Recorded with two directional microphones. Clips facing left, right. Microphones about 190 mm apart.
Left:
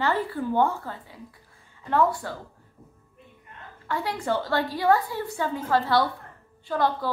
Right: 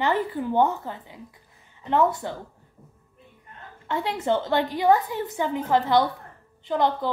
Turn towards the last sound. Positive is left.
turn(degrees=-20)  # may be behind; listen again after turning